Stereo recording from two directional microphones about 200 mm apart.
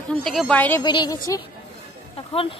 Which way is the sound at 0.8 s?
20° left (ahead or behind).